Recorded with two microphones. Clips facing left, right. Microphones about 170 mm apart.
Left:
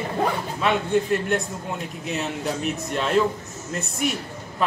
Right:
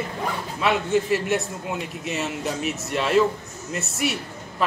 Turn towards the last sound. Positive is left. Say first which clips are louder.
# even
turn(degrees=-5)  # may be behind; listen again after turning